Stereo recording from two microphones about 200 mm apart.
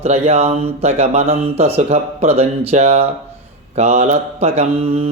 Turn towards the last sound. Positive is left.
turn(degrees=-30)  # may be behind; listen again after turning